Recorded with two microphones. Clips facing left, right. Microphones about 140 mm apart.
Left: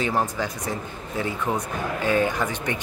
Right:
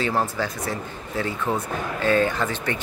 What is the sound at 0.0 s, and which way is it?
Speech, 15° left (ahead or behind).